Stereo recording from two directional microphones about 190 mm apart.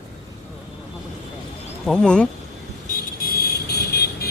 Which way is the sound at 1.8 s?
Centre (ahead or behind).